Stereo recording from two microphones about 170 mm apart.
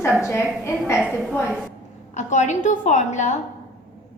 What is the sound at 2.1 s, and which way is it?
A woman's voice, 45° left (ahead or behind).